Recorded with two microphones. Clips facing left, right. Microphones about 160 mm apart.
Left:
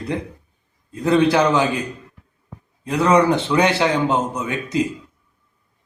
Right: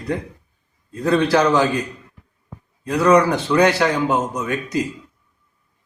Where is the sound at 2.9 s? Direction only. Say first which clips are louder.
Right 1 dB; 20° left (ahead or behind).